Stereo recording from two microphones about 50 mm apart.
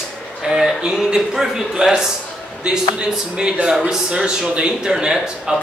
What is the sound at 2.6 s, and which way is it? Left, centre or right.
Speech, right.